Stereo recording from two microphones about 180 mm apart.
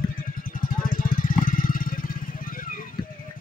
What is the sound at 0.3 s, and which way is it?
Vehicle, 50° left (ahead or behind).